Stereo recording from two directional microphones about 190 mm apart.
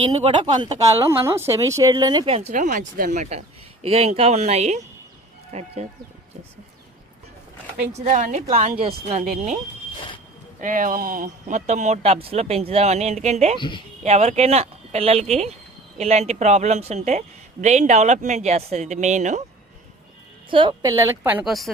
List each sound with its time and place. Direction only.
0.2 s speech: 25° right (ahead or behind)
7.8 s speech: 40° right (ahead or behind)
10.6 s speech: 45° right (ahead or behind)
13.6 s speech: 25° left (ahead or behind)
14.0 s speech: 35° right (ahead or behind)
20.5 s a woman's voice: 25° right (ahead or behind); by 21.7 s centre (ahead or behind)